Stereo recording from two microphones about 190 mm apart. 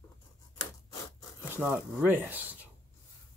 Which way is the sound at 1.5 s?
10° right (ahead or behind).